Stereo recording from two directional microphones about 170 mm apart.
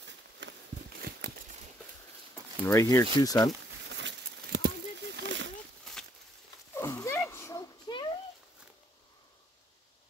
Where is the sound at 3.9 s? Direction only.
85° right.